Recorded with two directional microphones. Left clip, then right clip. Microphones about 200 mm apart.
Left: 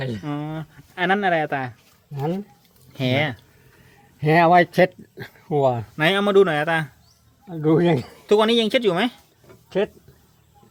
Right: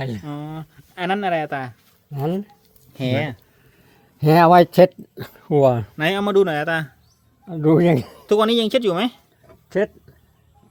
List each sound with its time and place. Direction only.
0.2 s speech: 10° left (ahead or behind)
2.1 s speech: 50° right (ahead or behind)
2.9 s speech: 5° left (ahead or behind)
4.2 s speech: 35° right (ahead or behind)
6.0 s speech: centre (ahead or behind)
7.4 s speech: 45° right (ahead or behind)
8.3 s speech: 10° right (ahead or behind)
9.6 s speech: 40° right (ahead or behind)